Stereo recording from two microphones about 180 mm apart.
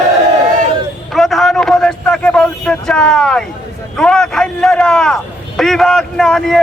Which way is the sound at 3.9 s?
5° left (ahead or behind).